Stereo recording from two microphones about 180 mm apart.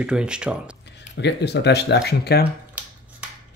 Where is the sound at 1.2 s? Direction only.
70° left (ahead or behind).